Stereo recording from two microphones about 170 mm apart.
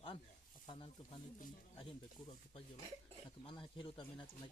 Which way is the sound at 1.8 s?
30° left (ahead or behind).